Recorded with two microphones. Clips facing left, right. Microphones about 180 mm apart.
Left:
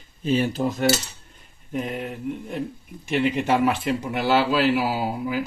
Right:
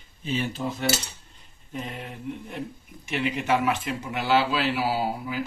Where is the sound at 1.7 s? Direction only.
55° left (ahead or behind).